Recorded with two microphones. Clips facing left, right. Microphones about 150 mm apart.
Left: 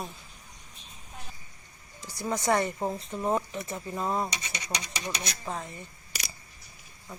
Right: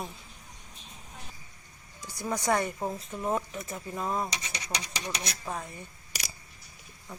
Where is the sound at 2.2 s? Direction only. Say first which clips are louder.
Left 1 dB; 10° left (ahead or behind).